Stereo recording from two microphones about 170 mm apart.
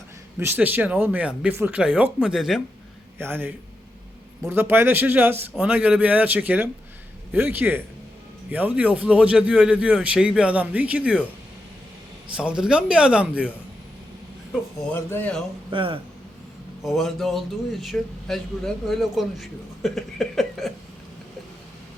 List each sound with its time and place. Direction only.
0.3 s a man's voice: 10° right (ahead or behind)
3.2 s a man's voice: 15° right (ahead or behind)
12.4 s a man's voice: 5° right (ahead or behind)
14.9 s speech: 10° left (ahead or behind)
15.7 s speech: 30° right (ahead or behind)
16.8 s a man's voice: centre (ahead or behind)